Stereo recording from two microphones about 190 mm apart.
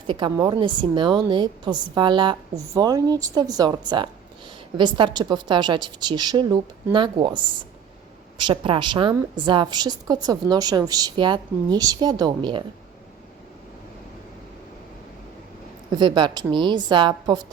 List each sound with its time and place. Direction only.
0.1 s a woman's voice: 25° right (ahead or behind)
15.9 s a woman's voice: 25° right (ahead or behind)